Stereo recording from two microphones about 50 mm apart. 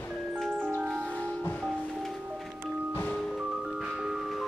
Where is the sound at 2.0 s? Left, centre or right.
Centre.